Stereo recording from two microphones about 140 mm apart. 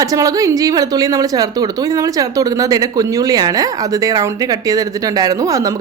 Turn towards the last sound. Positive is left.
turn(degrees=-25)  # may be behind; listen again after turning